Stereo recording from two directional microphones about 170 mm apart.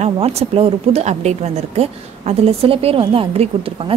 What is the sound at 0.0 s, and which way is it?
A woman's voice, 40° right (ahead or behind).